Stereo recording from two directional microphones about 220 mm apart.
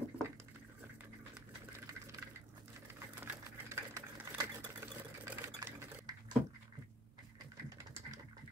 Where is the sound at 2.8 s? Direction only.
10° right (ahead or behind).